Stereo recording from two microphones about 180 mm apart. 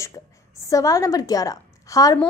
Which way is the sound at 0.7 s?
20° left (ahead or behind).